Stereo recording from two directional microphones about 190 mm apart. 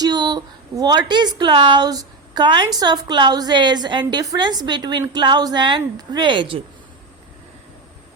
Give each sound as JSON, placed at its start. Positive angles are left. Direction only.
{"t": 0.0, "sound": "a woman's voice", "side_deg": -20}